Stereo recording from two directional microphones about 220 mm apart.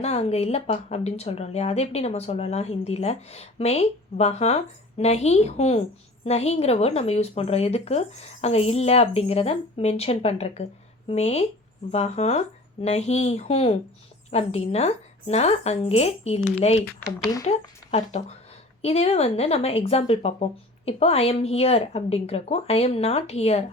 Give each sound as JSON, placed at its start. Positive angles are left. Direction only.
{"t": 0.0, "sound": "speech", "side_deg": 30}